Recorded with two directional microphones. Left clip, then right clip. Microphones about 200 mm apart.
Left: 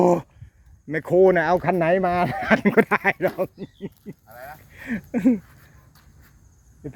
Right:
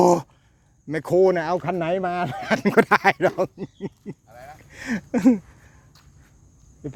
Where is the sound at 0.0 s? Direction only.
10° right (ahead or behind).